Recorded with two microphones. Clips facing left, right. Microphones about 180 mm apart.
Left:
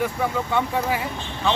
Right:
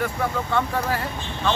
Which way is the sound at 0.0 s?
5° left (ahead or behind).